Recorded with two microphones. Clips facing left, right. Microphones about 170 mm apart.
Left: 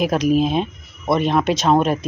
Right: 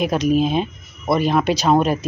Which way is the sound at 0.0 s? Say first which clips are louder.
Left 1 dB; centre (ahead or behind).